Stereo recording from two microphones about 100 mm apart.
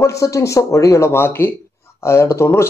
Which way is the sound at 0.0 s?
30° left (ahead or behind).